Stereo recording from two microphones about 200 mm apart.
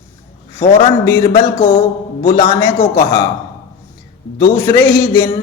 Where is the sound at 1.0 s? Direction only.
20° left (ahead or behind).